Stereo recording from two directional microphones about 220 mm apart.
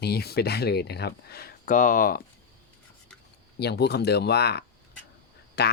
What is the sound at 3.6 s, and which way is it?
Speech, 50° left (ahead or behind).